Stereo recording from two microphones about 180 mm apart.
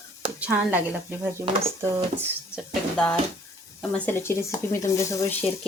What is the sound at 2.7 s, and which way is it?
Speech, 5° left (ahead or behind).